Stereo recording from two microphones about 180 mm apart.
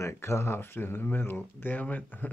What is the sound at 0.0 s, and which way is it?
Speech, 15° left (ahead or behind).